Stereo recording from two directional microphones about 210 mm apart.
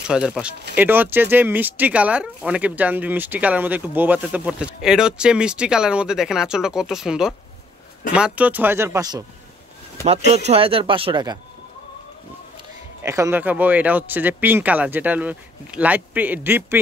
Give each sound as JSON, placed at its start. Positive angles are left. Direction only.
{"t": 0.1, "sound": "speech", "side_deg": -5}
{"t": 10.3, "sound": "speech", "side_deg": -30}
{"t": 13.0, "sound": "speech", "side_deg": -15}